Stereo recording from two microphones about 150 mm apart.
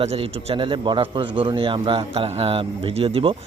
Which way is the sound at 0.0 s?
45° right (ahead or behind).